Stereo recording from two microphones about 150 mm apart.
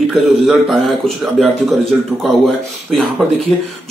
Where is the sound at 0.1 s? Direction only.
Centre (ahead or behind).